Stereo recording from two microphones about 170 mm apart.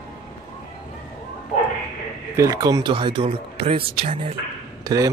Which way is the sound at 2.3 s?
20° right (ahead or behind).